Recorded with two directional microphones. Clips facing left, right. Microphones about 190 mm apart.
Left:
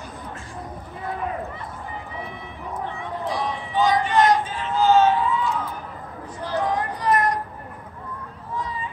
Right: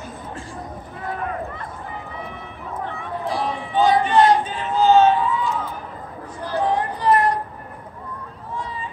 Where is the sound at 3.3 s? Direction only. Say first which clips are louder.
Right 3 dB; 30° right (ahead or behind).